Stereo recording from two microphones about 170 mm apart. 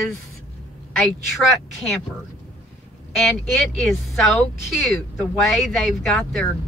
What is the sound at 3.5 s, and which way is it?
Speech, centre (ahead or behind).